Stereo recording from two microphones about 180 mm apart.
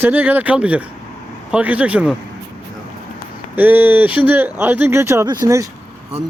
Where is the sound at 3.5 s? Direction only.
10° right (ahead or behind).